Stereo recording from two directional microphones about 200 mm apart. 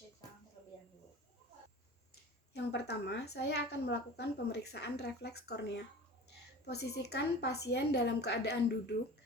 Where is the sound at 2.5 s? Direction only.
55° left (ahead or behind).